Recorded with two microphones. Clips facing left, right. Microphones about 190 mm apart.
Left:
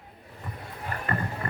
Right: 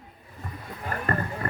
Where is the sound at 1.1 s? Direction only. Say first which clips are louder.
Right 3 dB; 40° right (ahead or behind).